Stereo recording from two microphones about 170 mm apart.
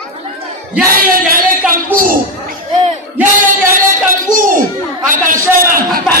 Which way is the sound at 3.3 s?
50° right (ahead or behind).